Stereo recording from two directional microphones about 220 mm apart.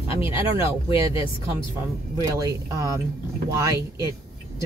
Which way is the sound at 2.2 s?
15° right (ahead or behind).